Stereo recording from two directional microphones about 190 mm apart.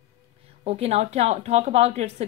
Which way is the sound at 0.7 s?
35° right (ahead or behind).